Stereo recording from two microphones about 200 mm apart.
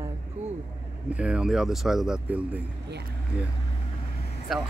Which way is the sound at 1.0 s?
5° right (ahead or behind).